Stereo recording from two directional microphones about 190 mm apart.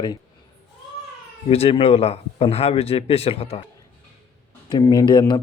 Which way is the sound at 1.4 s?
30° left (ahead or behind).